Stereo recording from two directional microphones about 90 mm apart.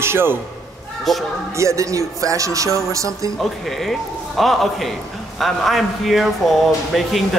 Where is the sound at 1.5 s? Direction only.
35° right (ahead or behind).